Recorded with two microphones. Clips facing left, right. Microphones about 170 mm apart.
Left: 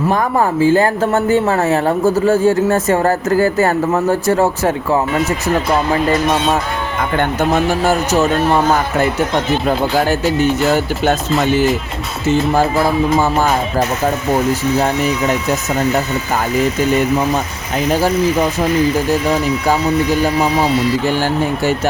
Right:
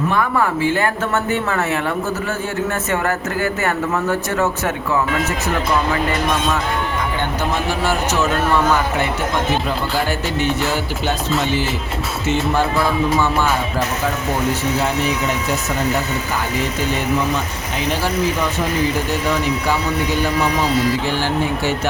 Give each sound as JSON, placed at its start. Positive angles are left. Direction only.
{"t": 0.1, "sound": "speech", "side_deg": 40}
{"t": 7.2, "sound": "speech", "side_deg": 45}
{"t": 10.4, "sound": "music", "side_deg": 45}
{"t": 13.1, "sound": "speech", "side_deg": 40}
{"t": 17.9, "sound": "music", "side_deg": 45}